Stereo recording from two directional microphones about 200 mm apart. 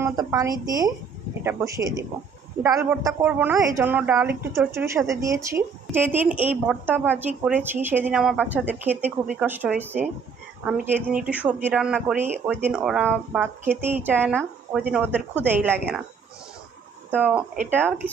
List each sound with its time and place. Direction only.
0.0 s speech: 15° right (ahead or behind)
17.2 s speech: 5° right (ahead or behind)